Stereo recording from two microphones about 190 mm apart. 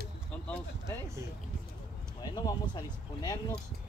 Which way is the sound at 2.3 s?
25° left (ahead or behind).